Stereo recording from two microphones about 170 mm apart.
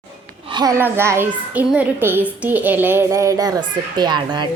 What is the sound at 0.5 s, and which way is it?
A child's voice, 20° right (ahead or behind).